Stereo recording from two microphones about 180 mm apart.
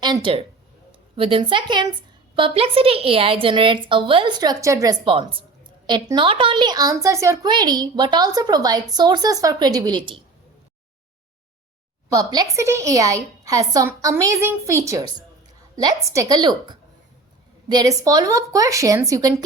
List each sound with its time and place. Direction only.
0.0 s a woman's voice: 25° right (ahead or behind)
12.1 s a woman's voice: 20° right (ahead or behind)